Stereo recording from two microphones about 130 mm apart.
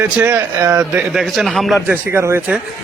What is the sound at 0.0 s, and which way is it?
Speech, 15° right (ahead or behind).